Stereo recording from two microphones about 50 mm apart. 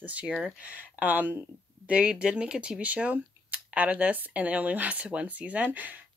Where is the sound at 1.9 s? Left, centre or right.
Centre.